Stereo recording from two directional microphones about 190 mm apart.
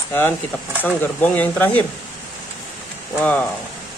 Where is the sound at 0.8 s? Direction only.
10° left (ahead or behind).